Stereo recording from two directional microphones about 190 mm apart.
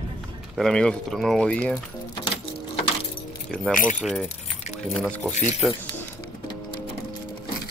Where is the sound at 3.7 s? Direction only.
45° left (ahead or behind).